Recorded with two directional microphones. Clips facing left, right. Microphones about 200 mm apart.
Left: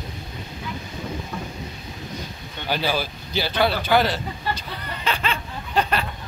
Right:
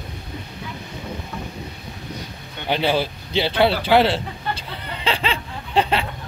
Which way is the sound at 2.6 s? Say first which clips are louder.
Right 4 dB; 25° right (ahead or behind).